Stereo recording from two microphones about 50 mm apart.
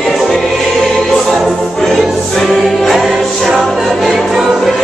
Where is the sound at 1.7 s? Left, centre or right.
Centre.